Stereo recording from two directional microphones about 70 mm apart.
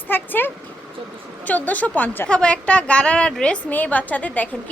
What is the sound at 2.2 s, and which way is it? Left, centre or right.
A woman's voice, centre.